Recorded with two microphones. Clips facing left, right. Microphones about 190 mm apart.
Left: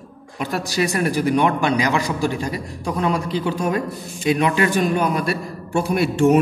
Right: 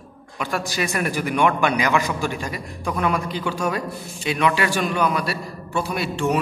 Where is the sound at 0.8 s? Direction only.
35° left (ahead or behind).